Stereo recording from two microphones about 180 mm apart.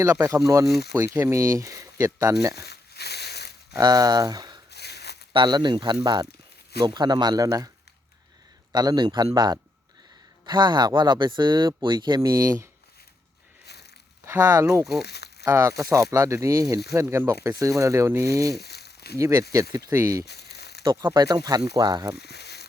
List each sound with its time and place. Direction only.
0.0 s speech: 15° right (ahead or behind)
2.6 s a sound: 65° left (ahead or behind)
3.8 s speech: 20° right (ahead or behind)
4.7 s a sound: 65° left (ahead or behind)
5.3 s speech: 25° right (ahead or behind)
8.7 s speech: 20° right (ahead or behind)
14.3 s speech: 15° right (ahead or behind)
15.0 s crumpling: 65° left (ahead or behind)
15.4 s speech: 20° right (ahead or behind)
18.6 s crumpling: 65° left (ahead or behind)
19.1 s speech: 15° right (ahead or behind)
20.2 s crumpling: 65° left (ahead or behind)
20.8 s speech: 20° right (ahead or behind)
22.1 s a sound: 65° left (ahead or behind)